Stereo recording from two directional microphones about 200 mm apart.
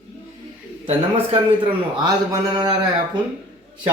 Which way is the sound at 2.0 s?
20° right (ahead or behind).